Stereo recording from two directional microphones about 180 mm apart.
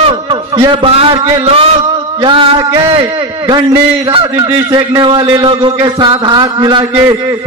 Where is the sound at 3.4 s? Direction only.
25° right (ahead or behind).